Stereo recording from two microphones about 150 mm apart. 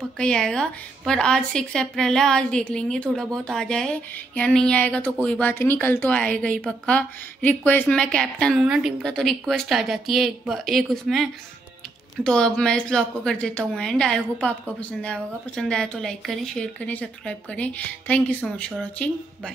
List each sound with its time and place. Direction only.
0.2 s a woman's voice: 5° left (ahead or behind)